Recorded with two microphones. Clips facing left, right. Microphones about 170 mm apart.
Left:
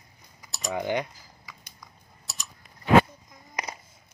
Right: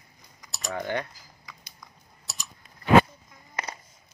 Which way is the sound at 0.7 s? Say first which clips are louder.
Left 2 dB; 15° left (ahead or behind).